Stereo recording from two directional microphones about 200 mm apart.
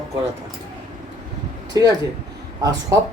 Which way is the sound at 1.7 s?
20° right (ahead or behind).